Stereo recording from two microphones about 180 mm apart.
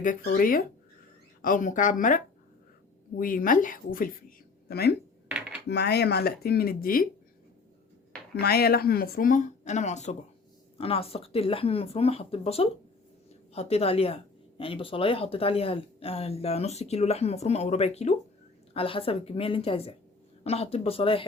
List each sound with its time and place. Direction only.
0.0 s a woman's voice: 50° left (ahead or behind)
8.4 s speech: 60° left (ahead or behind); by 21.2 s 30° left (ahead or behind)